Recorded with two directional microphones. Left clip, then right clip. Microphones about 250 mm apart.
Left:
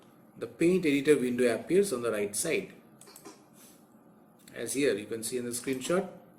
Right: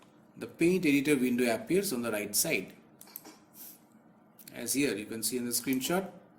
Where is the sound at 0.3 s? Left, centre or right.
Right.